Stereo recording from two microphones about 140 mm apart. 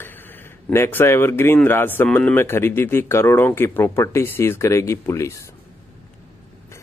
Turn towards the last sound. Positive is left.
turn(degrees=20)  # may be behind; listen again after turning